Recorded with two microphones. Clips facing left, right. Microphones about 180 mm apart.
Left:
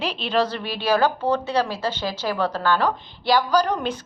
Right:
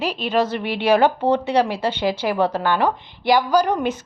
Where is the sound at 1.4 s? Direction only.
15° right (ahead or behind).